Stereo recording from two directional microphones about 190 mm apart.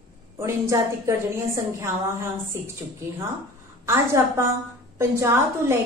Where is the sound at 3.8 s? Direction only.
15° right (ahead or behind).